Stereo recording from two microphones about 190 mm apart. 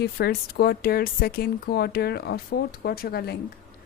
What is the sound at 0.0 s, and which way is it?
A woman's voice, 55° left (ahead or behind).